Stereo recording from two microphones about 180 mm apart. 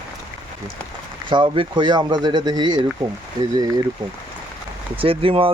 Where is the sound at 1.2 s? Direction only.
30° right (ahead or behind).